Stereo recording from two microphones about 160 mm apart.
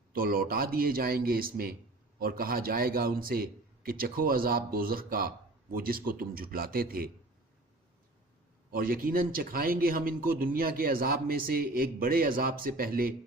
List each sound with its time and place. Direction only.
0.1 s a man's voice: 65° right (ahead or behind)
8.7 s a man's voice: 65° right (ahead or behind)